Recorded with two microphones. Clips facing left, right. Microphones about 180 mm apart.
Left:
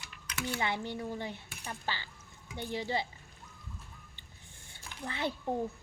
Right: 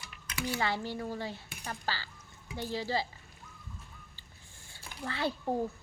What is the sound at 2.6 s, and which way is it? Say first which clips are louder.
Speech: right 1 dB; 20° left (ahead or behind).